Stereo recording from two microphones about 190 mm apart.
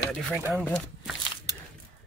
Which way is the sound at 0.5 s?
5° left (ahead or behind).